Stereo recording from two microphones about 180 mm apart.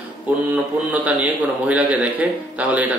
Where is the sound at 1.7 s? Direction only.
5° right (ahead or behind).